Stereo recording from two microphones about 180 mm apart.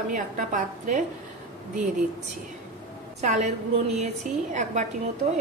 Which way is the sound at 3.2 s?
40° right (ahead or behind).